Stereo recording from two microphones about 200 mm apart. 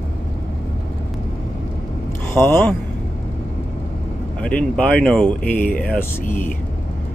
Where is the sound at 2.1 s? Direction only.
10° left (ahead or behind).